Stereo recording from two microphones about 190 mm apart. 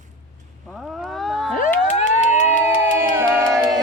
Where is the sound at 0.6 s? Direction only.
Centre (ahead or behind).